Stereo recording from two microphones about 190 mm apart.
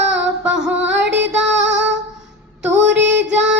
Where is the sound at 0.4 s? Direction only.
5° right (ahead or behind).